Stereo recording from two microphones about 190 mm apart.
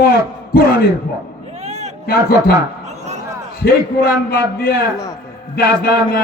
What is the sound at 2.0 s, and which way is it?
Speech, 55° left (ahead or behind).